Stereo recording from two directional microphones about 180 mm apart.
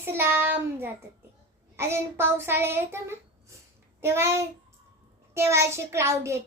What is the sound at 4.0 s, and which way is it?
Speech, 15° right (ahead or behind).